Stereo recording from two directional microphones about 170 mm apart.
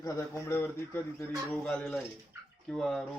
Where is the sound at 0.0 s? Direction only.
15° left (ahead or behind).